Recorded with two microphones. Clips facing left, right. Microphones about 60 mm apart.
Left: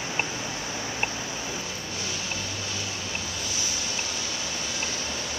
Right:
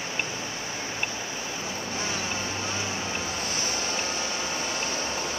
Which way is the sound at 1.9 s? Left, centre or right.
Right.